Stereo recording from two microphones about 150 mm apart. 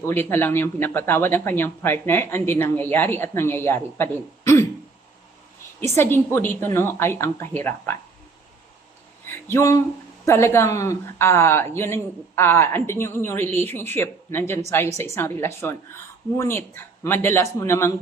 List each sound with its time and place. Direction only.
0.0 s speech: 15° left (ahead or behind)
6.0 s speech: 15° left (ahead or behind)
9.5 s speech: 20° left (ahead or behind)